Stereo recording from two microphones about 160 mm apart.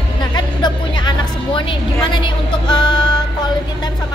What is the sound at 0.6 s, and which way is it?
Music, 25° left (ahead or behind).